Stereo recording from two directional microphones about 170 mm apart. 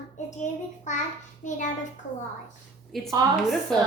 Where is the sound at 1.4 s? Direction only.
45° left (ahead or behind).